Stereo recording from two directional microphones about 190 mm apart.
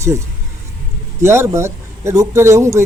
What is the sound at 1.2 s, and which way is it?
Speech, 15° right (ahead or behind).